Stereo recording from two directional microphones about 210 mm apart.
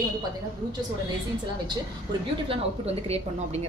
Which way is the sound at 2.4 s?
25° right (ahead or behind).